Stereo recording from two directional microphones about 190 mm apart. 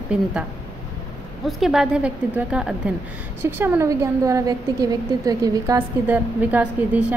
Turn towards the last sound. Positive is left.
turn(degrees=-10)  # may be behind; listen again after turning